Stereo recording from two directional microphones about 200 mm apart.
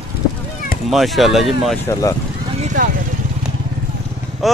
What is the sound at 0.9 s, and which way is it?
Speech, centre (ahead or behind).